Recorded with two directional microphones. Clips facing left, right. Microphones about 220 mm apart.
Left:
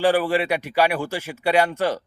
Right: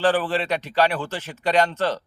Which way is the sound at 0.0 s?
10° left (ahead or behind).